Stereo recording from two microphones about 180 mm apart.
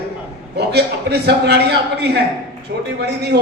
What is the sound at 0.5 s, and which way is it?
A man's voice, 65° right (ahead or behind).